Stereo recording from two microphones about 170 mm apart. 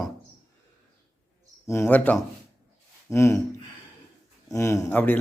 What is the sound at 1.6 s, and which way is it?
A man's voice, 15° left (ahead or behind).